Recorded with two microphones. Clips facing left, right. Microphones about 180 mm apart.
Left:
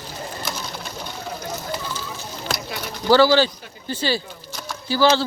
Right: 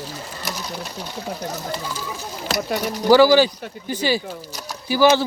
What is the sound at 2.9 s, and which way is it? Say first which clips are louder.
Speech: right 2 dB; 15° right (ahead or behind).